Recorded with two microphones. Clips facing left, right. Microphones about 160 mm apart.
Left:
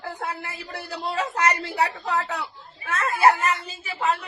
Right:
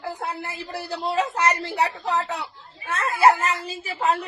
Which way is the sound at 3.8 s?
40° right (ahead or behind).